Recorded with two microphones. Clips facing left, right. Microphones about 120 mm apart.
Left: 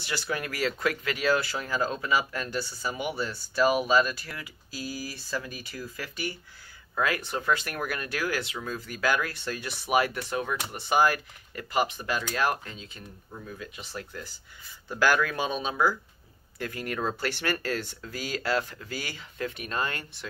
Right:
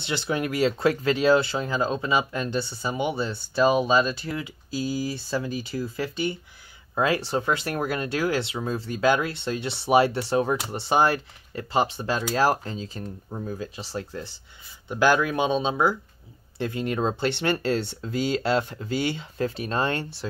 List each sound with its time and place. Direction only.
0.0 s speech: 25° right (ahead or behind)